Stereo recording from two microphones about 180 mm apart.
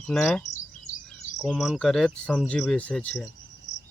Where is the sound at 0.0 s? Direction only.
5° left (ahead or behind).